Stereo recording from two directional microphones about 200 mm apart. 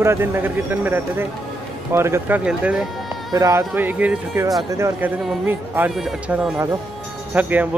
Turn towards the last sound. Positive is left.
turn(degrees=-10)  # may be behind; listen again after turning